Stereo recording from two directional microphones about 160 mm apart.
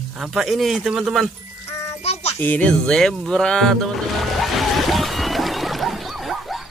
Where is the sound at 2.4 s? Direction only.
10° left (ahead or behind).